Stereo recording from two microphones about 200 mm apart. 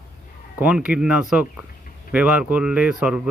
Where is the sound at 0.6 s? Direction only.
5° right (ahead or behind).